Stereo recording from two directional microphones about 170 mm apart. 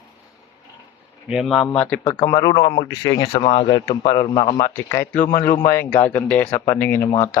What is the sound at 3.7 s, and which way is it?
Speech, 20° left (ahead or behind).